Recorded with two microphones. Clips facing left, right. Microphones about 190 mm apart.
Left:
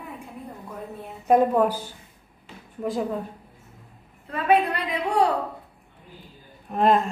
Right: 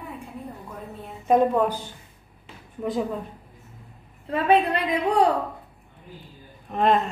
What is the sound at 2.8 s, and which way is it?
Speech, centre (ahead or behind).